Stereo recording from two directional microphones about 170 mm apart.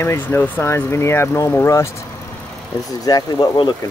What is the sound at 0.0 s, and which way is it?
Speech, 15° left (ahead or behind).